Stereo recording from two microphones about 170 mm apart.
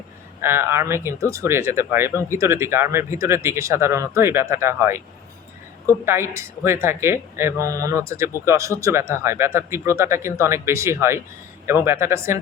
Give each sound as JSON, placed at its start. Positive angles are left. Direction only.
{"t": 0.4, "sound": "speech", "side_deg": -15}